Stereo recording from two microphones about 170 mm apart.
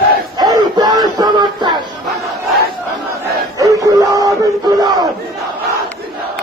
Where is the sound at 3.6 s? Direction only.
20° right (ahead or behind).